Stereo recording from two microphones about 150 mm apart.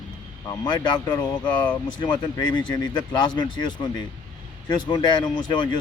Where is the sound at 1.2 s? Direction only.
30° left (ahead or behind).